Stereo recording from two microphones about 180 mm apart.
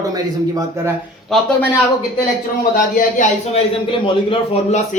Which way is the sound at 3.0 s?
45° left (ahead or behind).